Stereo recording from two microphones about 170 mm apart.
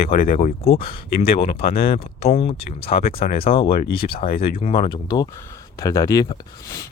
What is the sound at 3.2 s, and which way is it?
Speech, 60° left (ahead or behind).